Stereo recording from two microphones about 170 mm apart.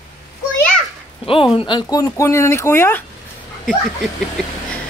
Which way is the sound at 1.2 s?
30° left (ahead or behind).